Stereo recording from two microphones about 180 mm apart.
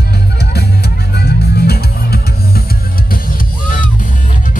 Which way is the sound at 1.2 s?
65° left (ahead or behind).